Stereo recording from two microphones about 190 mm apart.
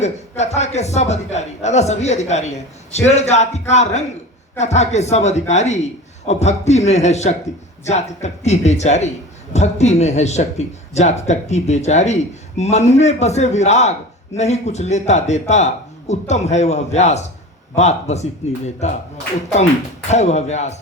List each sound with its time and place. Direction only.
0.0 s a man's voice: 35° left (ahead or behind)
20.1 s a man's voice: 35° left (ahead or behind)